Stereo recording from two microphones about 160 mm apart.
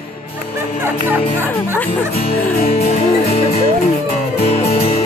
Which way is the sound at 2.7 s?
40° left (ahead or behind).